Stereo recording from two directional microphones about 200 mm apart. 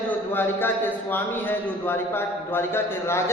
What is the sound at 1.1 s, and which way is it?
A man's voice, 10° left (ahead or behind).